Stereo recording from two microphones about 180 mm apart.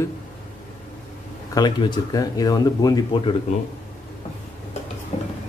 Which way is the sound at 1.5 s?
25° left (ahead or behind).